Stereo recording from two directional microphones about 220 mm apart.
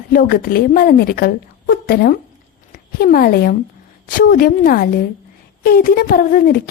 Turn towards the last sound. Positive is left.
turn(degrees=40)  # may be behind; listen again after turning